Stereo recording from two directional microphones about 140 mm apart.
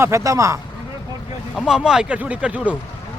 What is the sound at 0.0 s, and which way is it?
Speech, 20° right (ahead or behind).